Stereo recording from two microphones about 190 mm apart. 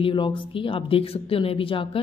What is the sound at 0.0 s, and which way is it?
Speech, 25° left (ahead or behind).